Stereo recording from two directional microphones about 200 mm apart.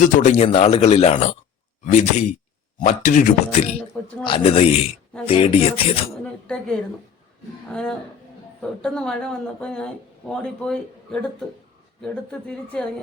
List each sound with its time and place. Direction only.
0.0 s speech: 35° left (ahead or behind)
4.2 s speech: 25° left (ahead or behind)
6.5 s speech: 5° left (ahead or behind)